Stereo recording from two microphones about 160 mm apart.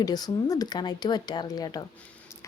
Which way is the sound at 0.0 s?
25° left (ahead or behind).